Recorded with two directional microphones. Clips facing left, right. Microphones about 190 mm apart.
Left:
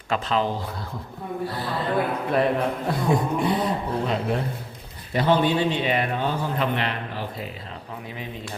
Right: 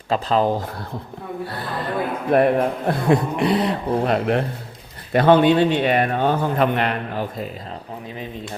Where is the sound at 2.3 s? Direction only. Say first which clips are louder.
Right 8 dB; 55° right (ahead or behind); by 8.2 s 35° right (ahead or behind).